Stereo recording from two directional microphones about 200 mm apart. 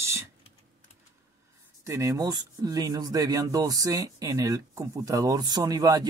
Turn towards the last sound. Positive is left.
turn(degrees=-20)  # may be behind; listen again after turning